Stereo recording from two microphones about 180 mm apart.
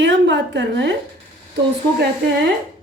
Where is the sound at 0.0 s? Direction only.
70° right (ahead or behind).